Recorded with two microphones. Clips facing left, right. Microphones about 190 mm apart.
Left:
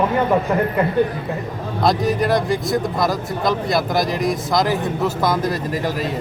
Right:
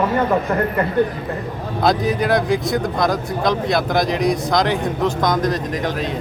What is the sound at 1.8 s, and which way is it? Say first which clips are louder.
Speech: even; centre (ahead or behind).